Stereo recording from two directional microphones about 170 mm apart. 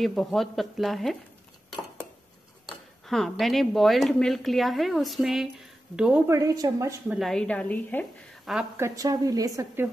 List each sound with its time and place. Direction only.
0.0 s speech: centre (ahead or behind)
2.6 s speech: centre (ahead or behind)
6.2 s a woman's voice: 20° right (ahead or behind)
7.1 s speech: centre (ahead or behind)
8.7 s a woman's voice: 20° right (ahead or behind)